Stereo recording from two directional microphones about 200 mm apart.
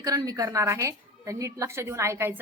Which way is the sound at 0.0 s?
20° right (ahead or behind).